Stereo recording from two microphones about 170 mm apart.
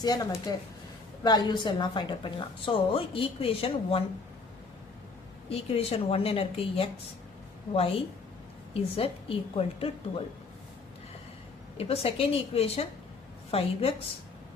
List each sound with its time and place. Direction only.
0.0 s a woman's voice: 20° left (ahead or behind)
5.5 s a woman's voice: 35° left (ahead or behind)
8.7 s a woman's voice: 35° left (ahead or behind)
11.8 s a woman's voice: 35° left (ahead or behind)